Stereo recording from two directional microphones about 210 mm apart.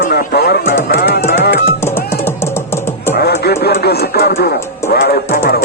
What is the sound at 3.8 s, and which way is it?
Speech, 50° left (ahead or behind).